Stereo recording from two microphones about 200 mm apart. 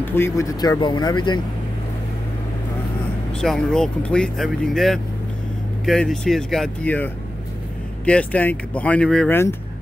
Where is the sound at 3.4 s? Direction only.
Centre (ahead or behind).